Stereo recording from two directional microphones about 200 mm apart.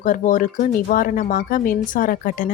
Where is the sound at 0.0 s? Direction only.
40° left (ahead or behind).